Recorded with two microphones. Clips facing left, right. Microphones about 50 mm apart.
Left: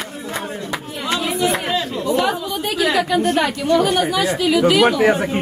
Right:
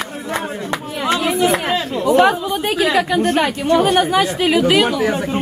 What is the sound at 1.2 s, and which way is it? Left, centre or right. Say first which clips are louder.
Chatter: right 3 dB; right.